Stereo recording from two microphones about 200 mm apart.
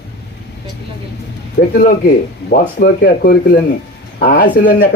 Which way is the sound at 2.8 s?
45° left (ahead or behind).